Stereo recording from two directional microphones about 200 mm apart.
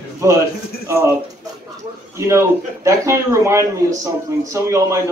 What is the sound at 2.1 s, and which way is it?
A man's voice, 15° right (ahead or behind).